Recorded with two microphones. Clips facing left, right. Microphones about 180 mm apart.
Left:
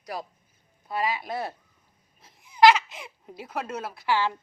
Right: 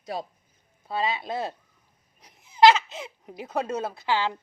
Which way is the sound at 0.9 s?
25° right (ahead or behind).